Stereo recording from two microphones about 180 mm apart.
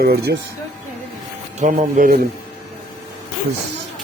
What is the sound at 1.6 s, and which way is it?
Speech, 50° right (ahead or behind).